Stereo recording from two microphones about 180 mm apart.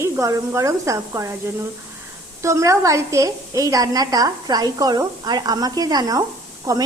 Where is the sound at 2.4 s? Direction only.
15° right (ahead or behind).